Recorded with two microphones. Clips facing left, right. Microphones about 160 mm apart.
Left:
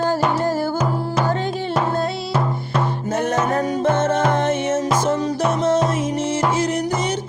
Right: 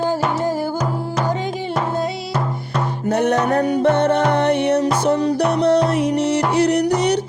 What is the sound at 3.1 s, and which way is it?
Music, 65° right (ahead or behind).